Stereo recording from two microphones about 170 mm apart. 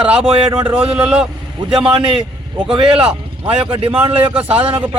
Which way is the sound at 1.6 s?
30° right (ahead or behind).